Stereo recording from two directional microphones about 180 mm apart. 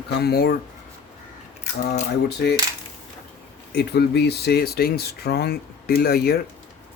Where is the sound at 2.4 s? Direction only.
65° left (ahead or behind).